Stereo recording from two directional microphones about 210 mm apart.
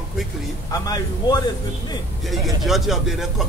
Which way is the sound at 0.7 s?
20° left (ahead or behind).